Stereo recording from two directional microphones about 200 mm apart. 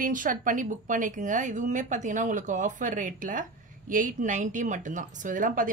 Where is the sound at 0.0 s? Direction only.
45° right (ahead or behind).